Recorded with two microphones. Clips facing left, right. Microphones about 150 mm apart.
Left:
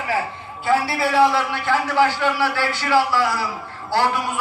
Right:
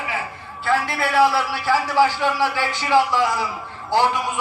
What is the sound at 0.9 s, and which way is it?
A man's voice, centre (ahead or behind).